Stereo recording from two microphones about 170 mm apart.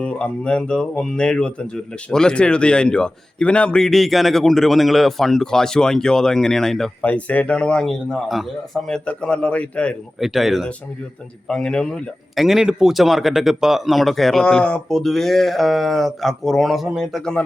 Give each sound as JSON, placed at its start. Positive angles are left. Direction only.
{"t": 0.0, "sound": "speech", "side_deg": 5}